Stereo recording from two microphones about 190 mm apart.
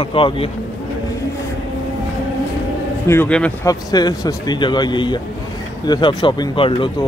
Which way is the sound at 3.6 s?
20° left (ahead or behind).